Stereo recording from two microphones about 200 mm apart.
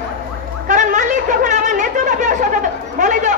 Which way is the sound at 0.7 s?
40° right (ahead or behind).